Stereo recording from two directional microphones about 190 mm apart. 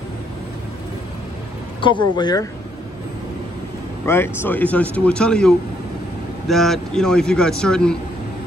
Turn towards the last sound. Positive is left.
turn(degrees=5)  # may be behind; listen again after turning